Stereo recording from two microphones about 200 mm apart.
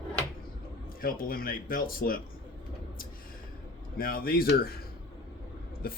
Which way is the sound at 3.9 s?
45° left (ahead or behind).